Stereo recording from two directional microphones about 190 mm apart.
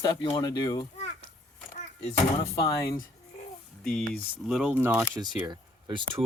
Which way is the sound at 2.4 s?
20° left (ahead or behind).